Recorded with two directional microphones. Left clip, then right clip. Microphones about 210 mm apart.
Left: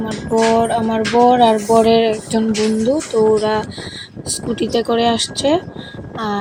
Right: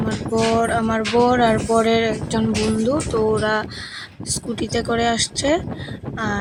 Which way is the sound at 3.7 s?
50° right (ahead or behind).